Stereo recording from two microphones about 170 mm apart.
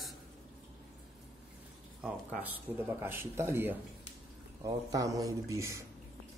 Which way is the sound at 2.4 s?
10° right (ahead or behind).